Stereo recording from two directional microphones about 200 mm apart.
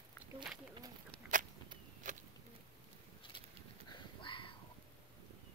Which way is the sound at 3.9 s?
25° left (ahead or behind).